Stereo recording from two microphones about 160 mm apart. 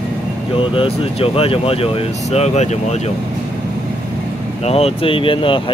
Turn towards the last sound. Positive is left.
turn(degrees=35)  # may be behind; listen again after turning